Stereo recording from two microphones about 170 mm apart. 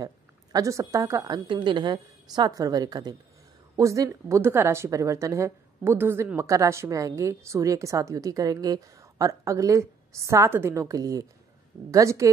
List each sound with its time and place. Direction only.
0.0 s a woman's voice: 20° right (ahead or behind)